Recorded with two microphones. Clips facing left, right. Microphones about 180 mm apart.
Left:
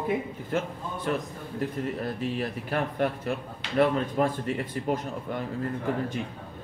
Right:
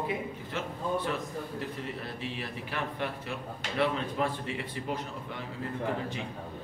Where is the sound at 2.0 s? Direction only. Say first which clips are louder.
Left 8 dB; 45° left (ahead or behind).